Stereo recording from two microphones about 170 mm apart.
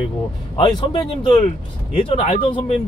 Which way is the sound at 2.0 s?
35° left (ahead or behind).